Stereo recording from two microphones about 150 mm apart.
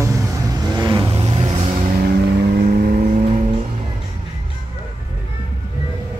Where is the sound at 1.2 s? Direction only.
40° right (ahead or behind).